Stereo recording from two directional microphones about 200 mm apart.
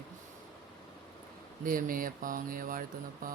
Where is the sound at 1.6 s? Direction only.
45° right (ahead or behind).